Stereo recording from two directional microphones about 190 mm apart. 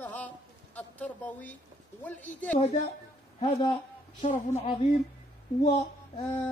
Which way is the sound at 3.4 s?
30° left (ahead or behind).